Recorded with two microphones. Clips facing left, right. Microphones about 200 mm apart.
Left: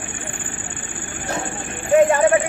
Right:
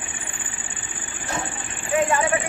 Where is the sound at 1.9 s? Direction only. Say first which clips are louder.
Left 7 dB; 50° left (ahead or behind).